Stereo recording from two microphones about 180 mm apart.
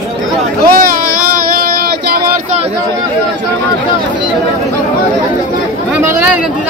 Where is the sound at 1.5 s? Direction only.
55° right (ahead or behind).